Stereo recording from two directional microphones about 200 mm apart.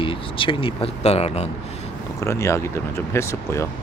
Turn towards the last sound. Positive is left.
turn(degrees=15)  # may be behind; listen again after turning